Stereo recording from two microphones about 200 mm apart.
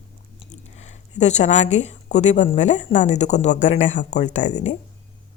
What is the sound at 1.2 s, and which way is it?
A woman's voice, 35° left (ahead or behind).